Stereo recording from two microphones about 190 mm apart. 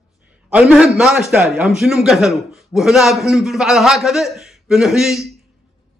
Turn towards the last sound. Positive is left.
turn(degrees=0)  # may be behind; listen again after turning